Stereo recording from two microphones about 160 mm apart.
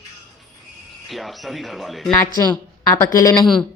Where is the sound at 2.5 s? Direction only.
20° left (ahead or behind).